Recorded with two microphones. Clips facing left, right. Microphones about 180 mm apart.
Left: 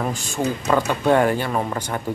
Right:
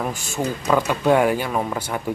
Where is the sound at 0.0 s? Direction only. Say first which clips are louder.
Left 1 dB; 10° right (ahead or behind).